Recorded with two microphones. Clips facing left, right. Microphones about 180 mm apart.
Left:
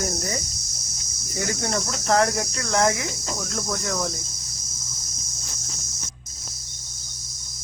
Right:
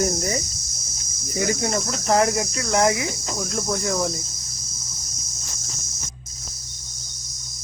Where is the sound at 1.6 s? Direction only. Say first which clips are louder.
Right 2 dB; 10° right (ahead or behind).